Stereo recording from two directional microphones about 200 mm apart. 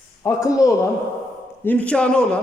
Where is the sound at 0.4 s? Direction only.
15° left (ahead or behind).